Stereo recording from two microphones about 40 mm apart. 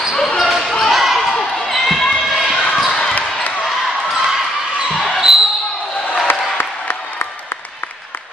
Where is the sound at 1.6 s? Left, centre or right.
Centre.